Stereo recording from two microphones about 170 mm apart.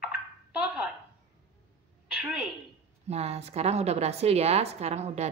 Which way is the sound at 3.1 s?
40° right (ahead or behind).